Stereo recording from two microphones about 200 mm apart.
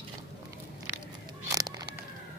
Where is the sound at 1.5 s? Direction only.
15° right (ahead or behind).